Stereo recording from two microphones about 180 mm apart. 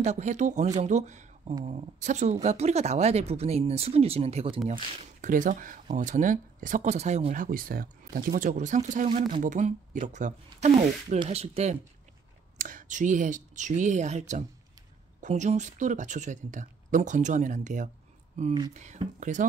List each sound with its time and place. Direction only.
0.0 s speech: 40° right (ahead or behind)
5.2 s speech: 45° right (ahead or behind)
12.5 s speech: 50° right (ahead or behind)